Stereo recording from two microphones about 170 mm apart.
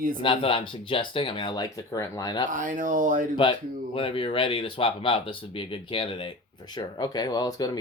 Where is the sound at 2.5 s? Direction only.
50° right (ahead or behind).